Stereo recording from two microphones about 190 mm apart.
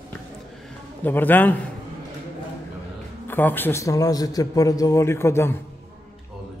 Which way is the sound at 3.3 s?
10° left (ahead or behind).